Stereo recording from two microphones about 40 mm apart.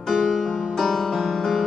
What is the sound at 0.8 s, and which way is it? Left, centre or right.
Music, centre.